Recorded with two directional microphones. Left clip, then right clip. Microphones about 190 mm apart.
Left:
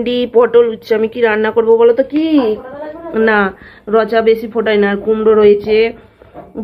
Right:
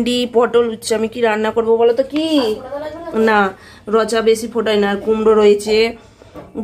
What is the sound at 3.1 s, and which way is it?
Speech, 10° right (ahead or behind).